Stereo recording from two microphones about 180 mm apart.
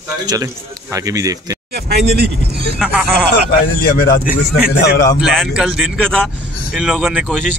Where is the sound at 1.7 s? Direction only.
65° right (ahead or behind).